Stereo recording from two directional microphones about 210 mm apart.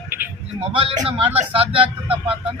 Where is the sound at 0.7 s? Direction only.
25° right (ahead or behind).